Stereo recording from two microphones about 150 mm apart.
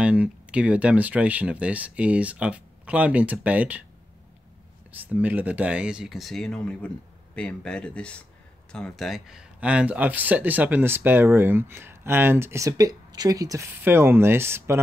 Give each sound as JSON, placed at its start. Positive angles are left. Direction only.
{"t": 0.0, "sound": "speech", "side_deg": -5}
{"t": 4.9, "sound": "speech", "side_deg": -10}